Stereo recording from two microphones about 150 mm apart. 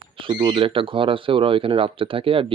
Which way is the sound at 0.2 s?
35° right (ahead or behind).